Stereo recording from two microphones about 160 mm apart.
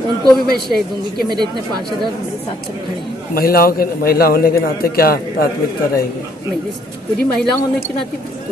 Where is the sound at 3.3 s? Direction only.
65° left (ahead or behind).